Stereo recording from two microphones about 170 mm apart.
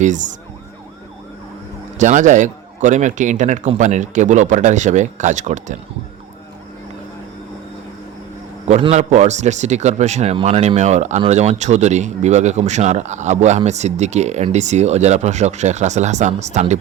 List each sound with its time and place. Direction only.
0.0 s a man's voice: 45° right (ahead or behind)
2.0 s a man's voice: 45° right (ahead or behind)
8.6 s a man's voice: 40° right (ahead or behind)